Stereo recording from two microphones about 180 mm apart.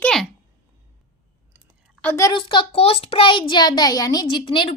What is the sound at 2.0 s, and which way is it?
A child's voice, 15° left (ahead or behind).